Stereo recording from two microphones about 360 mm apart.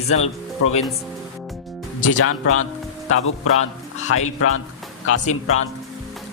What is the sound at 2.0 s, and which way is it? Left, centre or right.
A man's voice, left.